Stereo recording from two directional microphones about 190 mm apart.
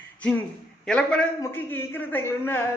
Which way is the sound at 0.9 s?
5° left (ahead or behind).